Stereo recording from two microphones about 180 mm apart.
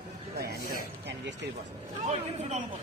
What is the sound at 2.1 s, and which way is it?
Speech, 35° right (ahead or behind).